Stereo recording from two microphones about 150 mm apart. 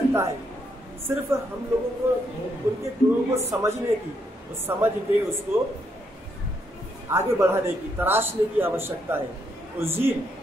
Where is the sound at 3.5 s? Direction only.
20° right (ahead or behind).